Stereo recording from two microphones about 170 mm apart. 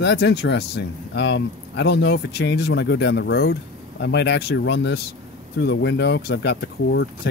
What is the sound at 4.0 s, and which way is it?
Speech, 90° left.